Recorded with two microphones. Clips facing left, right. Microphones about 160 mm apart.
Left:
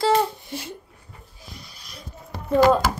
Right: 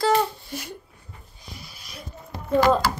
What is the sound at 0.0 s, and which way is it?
Babbling, 25° left (ahead or behind).